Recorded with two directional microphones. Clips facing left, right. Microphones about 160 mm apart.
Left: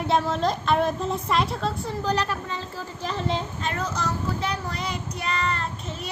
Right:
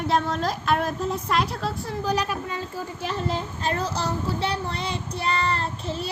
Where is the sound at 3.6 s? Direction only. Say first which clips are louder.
Right 2 dB; 35° right (ahead or behind).